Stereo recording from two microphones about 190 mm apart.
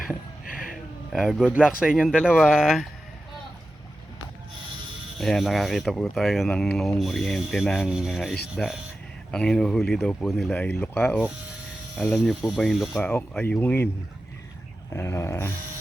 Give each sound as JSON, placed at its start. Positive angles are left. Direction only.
{"t": 0.4, "sound": "music", "side_deg": 45}
{"t": 1.1, "sound": "speech", "side_deg": 0}
{"t": 5.2, "sound": "speech", "side_deg": 0}
{"t": 14.9, "sound": "a sound", "side_deg": 15}